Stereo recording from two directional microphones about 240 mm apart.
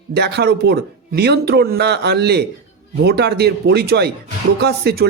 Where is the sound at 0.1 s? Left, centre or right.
Right.